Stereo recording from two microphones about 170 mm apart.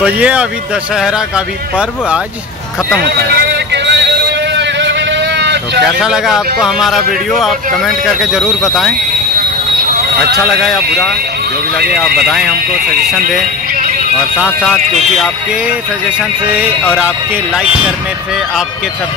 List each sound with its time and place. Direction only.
0.0 s speech: 5° right (ahead or behind)
3.0 s vehicle: 75° right (ahead or behind)
5.9 s speech: 5° right (ahead or behind)
10.6 s speech: centre (ahead or behind)
12.2 s speech: 5° right (ahead or behind)
13.7 s music: 50° right (ahead or behind)
14.4 s speech: centre (ahead or behind)
16.4 s speech: 10° right (ahead or behind)